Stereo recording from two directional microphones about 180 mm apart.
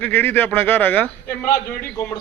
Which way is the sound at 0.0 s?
10° left (ahead or behind).